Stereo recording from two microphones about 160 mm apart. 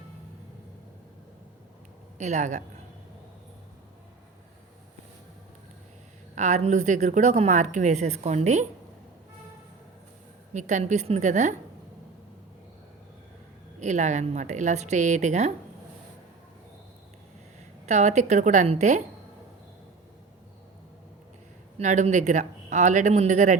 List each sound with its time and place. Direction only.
2.1 s a woman's voice: 50° right (ahead or behind)
6.3 s a woman's voice: 45° right (ahead or behind)
10.5 s a woman's voice: 50° right (ahead or behind)
13.7 s a woman's voice: 45° right (ahead or behind)
17.8 s a woman's voice: 45° right (ahead or behind)
21.8 s a woman's voice: 45° right (ahead or behind)